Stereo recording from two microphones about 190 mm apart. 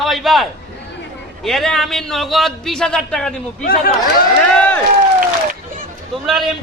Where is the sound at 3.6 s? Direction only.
50° left (ahead or behind).